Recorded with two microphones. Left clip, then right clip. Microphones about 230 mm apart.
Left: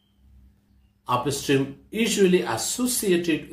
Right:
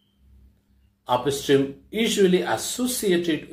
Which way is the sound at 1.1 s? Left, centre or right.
Centre.